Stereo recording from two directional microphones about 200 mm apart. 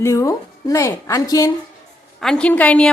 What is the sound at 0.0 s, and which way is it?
A woman's voice, 15° left (ahead or behind).